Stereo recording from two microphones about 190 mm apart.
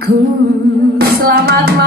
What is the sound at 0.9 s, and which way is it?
Music, 55° right (ahead or behind).